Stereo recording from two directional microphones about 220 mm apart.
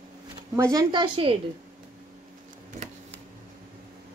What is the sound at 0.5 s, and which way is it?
Speech, 15° right (ahead or behind).